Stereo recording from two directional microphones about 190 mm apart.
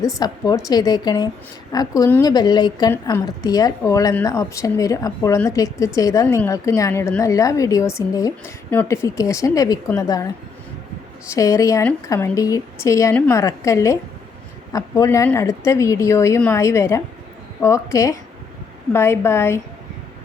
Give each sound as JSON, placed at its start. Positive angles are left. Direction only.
{"t": 0.0, "sound": "a woman's voice", "side_deg": 20}